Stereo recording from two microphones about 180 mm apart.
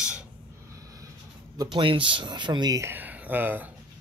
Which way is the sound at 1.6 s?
25° right (ahead or behind).